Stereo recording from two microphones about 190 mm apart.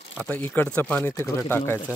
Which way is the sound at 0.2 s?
10° left (ahead or behind).